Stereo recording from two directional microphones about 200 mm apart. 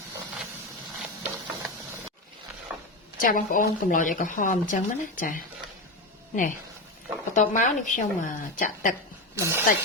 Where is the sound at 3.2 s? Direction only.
45° left (ahead or behind).